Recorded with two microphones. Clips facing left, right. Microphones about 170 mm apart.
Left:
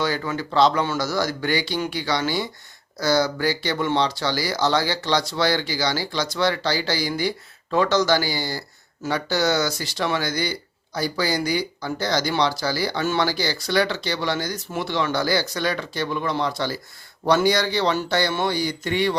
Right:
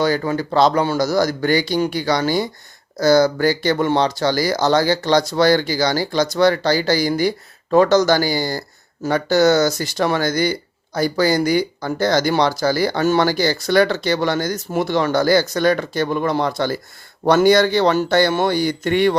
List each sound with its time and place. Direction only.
0.0 s speech: 40° right (ahead or behind)